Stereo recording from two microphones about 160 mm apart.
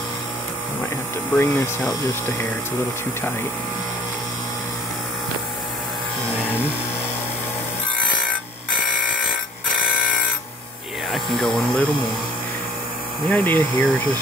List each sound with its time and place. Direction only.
1.3 s speech: 15° left (ahead or behind)
11.1 s speech: centre (ahead or behind)
13.3 s speech: 10° left (ahead or behind)